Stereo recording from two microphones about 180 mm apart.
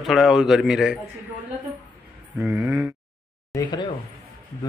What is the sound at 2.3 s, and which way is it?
Speech, 10° right (ahead or behind).